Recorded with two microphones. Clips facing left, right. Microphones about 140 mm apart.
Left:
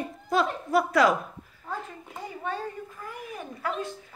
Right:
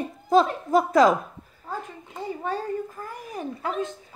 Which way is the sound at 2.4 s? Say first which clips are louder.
Right 4 dB; 40° right (ahead or behind).